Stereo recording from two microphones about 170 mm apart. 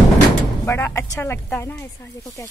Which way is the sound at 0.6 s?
15° left (ahead or behind).